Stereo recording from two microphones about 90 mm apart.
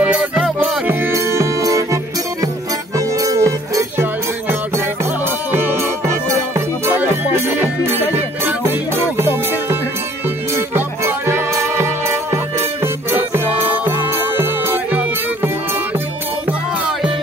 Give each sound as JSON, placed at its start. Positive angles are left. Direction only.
{"t": 0.0, "sound": "music", "side_deg": -15}
{"t": 0.8, "sound": "music", "side_deg": -30}
{"t": 3.0, "sound": "music", "side_deg": -40}
{"t": 5.5, "sound": "music", "side_deg": -25}